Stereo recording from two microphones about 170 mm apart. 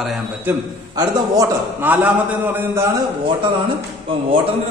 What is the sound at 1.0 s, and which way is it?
Speech, 25° right (ahead or behind).